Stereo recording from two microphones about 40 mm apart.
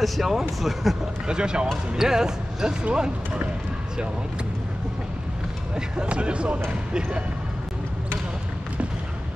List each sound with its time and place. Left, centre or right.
0.0 s speech: centre
1.2 s speech: right
6.0 s speech: right